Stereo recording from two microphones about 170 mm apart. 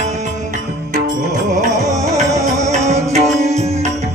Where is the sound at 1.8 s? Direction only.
20° right (ahead or behind).